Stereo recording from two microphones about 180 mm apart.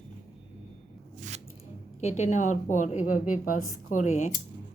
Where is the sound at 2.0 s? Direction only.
40° left (ahead or behind).